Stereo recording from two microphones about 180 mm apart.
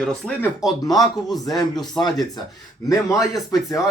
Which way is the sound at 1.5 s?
20° left (ahead or behind).